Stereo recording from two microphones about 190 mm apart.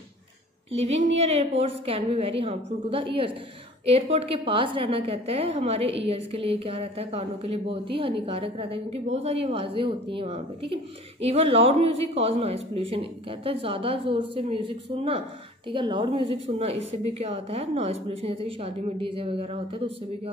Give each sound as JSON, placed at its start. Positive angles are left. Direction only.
{"t": 0.7, "sound": "a woman's voice", "side_deg": -35}